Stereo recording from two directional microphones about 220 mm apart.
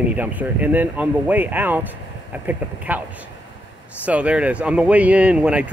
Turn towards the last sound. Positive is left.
turn(degrees=-5)  # may be behind; listen again after turning